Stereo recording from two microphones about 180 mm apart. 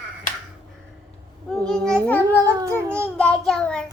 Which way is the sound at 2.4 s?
20° right (ahead or behind).